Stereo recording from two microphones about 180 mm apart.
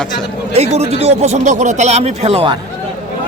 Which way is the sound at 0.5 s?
35° right (ahead or behind).